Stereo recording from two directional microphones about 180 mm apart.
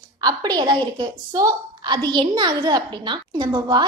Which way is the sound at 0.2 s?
20° right (ahead or behind).